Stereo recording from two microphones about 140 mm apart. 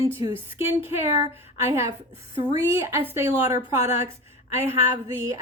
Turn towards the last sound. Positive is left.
turn(degrees=-20)  # may be behind; listen again after turning